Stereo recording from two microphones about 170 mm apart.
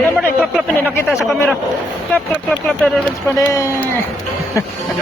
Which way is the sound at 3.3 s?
20° left (ahead or behind).